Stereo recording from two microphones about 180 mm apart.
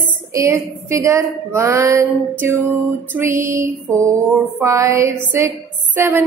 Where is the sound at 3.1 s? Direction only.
15° right (ahead or behind).